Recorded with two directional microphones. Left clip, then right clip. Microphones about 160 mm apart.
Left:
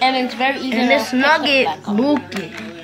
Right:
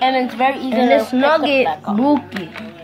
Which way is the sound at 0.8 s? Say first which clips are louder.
Right 2 dB; 5° right (ahead or behind).